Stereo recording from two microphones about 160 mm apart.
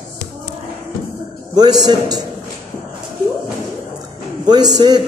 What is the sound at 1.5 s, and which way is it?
Speech, 25° right (ahead or behind).